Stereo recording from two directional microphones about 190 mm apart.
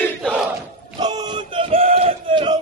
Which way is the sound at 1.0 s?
20° right (ahead or behind).